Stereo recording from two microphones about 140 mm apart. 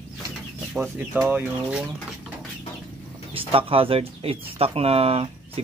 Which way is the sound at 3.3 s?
40° right (ahead or behind).